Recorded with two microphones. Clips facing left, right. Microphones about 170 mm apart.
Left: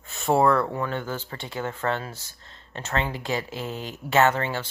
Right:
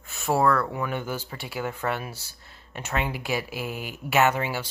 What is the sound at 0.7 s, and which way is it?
Speech, 10° right (ahead or behind).